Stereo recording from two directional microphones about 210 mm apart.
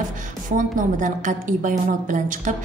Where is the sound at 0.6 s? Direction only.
35° right (ahead or behind).